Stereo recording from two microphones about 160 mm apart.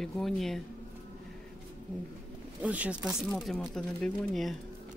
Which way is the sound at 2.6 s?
10° right (ahead or behind).